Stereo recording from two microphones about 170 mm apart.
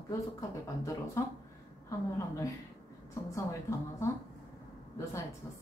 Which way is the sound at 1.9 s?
15° left (ahead or behind).